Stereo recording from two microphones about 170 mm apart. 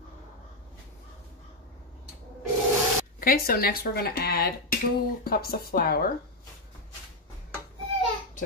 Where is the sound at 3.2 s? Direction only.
60° left (ahead or behind).